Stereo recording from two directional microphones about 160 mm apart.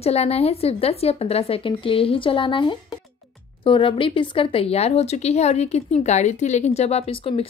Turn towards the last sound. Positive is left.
turn(degrees=35)  # may be behind; listen again after turning